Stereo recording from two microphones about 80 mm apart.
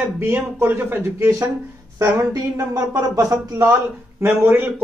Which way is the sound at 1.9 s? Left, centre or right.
Right.